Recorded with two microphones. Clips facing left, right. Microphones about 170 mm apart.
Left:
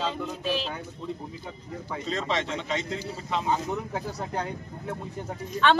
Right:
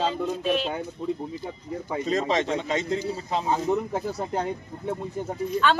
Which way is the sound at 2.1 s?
40° right (ahead or behind).